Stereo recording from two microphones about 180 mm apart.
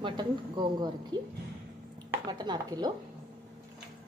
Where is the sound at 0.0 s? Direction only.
25° right (ahead or behind).